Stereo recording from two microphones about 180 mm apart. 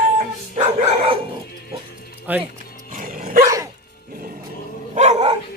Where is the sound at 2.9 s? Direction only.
50° right (ahead or behind).